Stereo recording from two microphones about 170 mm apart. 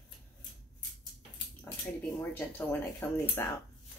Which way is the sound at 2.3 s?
10° left (ahead or behind).